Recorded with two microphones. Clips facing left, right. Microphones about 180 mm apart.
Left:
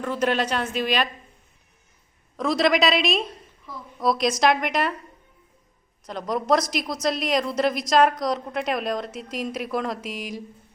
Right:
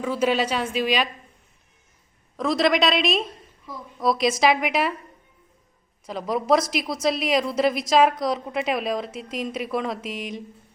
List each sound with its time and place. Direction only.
0.0 s a woman's voice: 5° right (ahead or behind)
2.3 s a woman's voice: centre (ahead or behind)
6.1 s a woman's voice: 5° right (ahead or behind)